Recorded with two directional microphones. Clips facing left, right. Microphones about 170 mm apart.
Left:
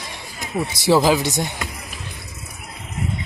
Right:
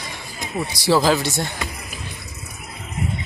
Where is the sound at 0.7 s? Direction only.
20° left (ahead or behind).